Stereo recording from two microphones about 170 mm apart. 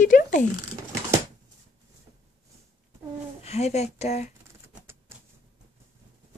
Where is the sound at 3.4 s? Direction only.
40° left (ahead or behind).